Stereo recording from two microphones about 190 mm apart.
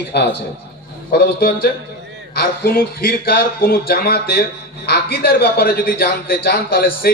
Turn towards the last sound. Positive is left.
turn(degrees=50)  # may be behind; listen again after turning